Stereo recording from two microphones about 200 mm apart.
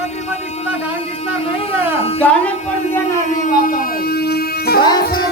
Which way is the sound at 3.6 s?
45° left (ahead or behind).